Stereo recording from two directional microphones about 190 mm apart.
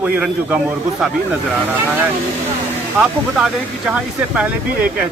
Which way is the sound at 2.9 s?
5° right (ahead or behind).